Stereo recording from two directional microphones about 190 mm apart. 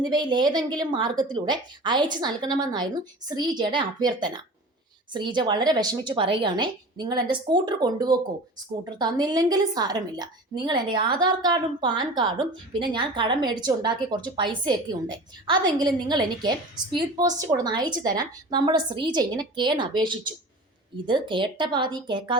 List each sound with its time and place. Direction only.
0.0 s a woman's voice: 25° right (ahead or behind)